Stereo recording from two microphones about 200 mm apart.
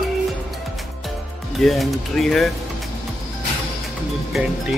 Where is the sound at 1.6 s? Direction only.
Centre (ahead or behind).